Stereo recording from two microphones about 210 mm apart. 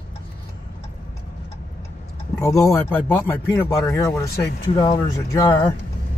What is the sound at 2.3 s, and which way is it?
Speech, 15° left (ahead or behind).